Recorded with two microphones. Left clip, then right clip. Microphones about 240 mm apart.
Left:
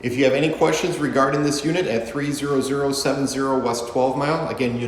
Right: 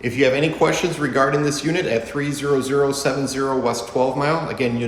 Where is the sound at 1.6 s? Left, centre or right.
Centre.